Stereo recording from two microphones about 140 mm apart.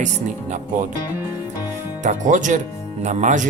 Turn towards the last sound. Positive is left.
turn(degrees=-65)  # may be behind; listen again after turning